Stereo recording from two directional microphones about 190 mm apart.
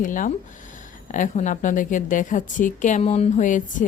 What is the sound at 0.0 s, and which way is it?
A woman's voice, 45° left (ahead or behind).